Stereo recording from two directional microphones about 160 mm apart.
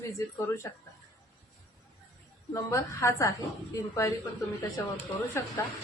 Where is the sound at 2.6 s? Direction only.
15° left (ahead or behind).